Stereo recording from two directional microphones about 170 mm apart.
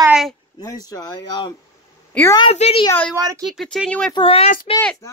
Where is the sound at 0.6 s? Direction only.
20° left (ahead or behind).